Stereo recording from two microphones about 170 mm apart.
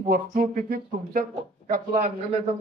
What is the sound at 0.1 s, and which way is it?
Speech, 60° right (ahead or behind).